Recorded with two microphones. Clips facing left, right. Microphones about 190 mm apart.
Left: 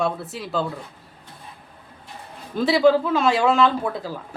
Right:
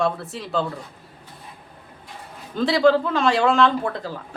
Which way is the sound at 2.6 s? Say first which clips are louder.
Left 1 dB; 5° left (ahead or behind).